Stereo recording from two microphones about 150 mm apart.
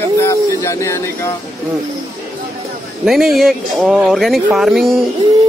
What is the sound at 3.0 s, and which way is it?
Speech, centre (ahead or behind).